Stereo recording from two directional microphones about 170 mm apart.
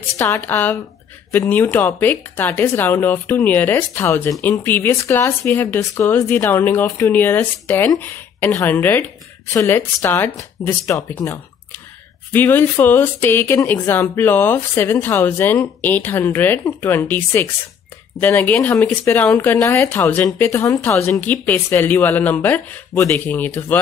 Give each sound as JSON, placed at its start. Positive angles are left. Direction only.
{"t": 0.2, "sound": "speech", "side_deg": 15}
{"t": 19.3, "sound": "speech", "side_deg": 15}